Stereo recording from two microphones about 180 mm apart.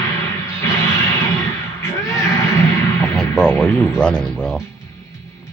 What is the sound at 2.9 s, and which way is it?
Music, 5° left (ahead or behind).